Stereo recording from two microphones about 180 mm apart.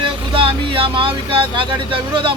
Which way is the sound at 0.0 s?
30° right (ahead or behind).